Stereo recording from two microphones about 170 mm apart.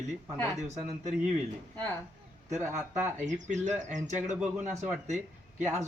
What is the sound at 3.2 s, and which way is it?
Speech, 45° right (ahead or behind).